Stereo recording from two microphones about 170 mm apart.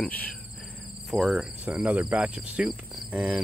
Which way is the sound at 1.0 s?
Centre (ahead or behind).